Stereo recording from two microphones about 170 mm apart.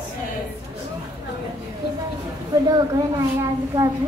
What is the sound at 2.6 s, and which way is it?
Speech, 20° right (ahead or behind).